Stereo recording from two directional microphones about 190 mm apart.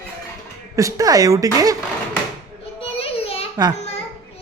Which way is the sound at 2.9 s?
30° left (ahead or behind).